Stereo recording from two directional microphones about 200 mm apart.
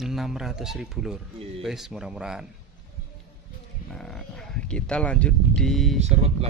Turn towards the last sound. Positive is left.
turn(degrees=-35)  # may be behind; listen again after turning